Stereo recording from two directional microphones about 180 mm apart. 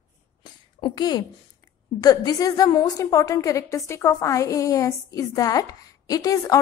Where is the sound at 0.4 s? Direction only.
25° left (ahead or behind).